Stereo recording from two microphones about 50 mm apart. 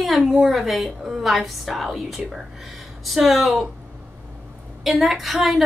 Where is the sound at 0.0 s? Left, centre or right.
Centre.